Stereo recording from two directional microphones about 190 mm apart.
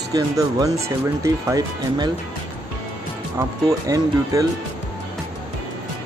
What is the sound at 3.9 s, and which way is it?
Speech, 15° right (ahead or behind).